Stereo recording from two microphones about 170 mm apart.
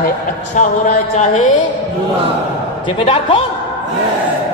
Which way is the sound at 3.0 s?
30° left (ahead or behind).